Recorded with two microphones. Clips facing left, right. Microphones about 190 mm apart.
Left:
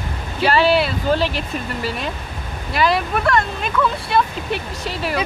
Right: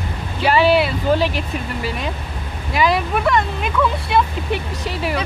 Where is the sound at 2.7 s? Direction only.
10° right (ahead or behind).